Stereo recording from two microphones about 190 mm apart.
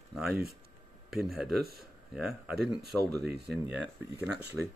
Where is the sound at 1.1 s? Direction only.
Centre (ahead or behind).